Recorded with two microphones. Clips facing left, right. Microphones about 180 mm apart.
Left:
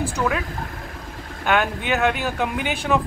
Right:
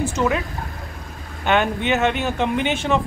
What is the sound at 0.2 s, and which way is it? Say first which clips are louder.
Speech: right 3 dB; 20° right (ahead or behind).